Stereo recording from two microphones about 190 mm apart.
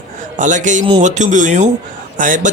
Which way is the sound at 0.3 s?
40° right (ahead or behind).